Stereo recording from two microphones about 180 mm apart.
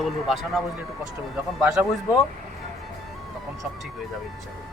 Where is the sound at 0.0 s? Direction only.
Centre (ahead or behind).